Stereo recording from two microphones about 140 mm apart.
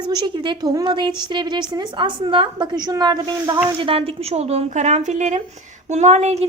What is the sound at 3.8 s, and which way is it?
A woman's voice, 40° right (ahead or behind).